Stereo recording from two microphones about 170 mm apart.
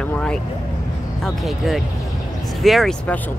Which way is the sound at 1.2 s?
Centre (ahead or behind).